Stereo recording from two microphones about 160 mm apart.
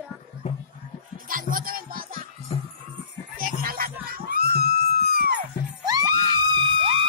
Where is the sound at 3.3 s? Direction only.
65° right (ahead or behind).